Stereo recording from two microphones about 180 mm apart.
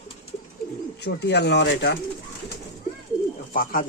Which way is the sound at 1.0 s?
70° left (ahead or behind).